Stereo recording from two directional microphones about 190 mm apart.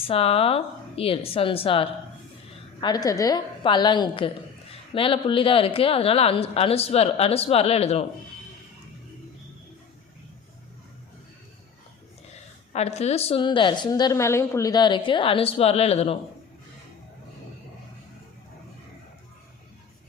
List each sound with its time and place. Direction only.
0.1 s a woman's voice: 30° left (ahead or behind)
12.7 s a woman's voice: 35° left (ahead or behind)